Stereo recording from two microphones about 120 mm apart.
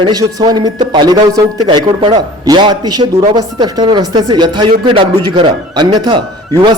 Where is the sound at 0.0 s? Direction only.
30° right (ahead or behind).